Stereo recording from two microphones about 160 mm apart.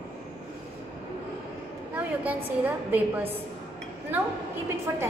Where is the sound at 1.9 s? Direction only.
10° right (ahead or behind).